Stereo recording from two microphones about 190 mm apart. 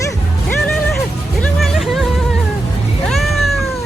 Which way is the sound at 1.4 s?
Centre (ahead or behind).